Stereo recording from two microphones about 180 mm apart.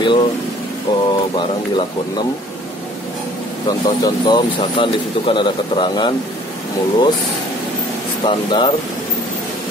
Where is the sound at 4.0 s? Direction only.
25° left (ahead or behind).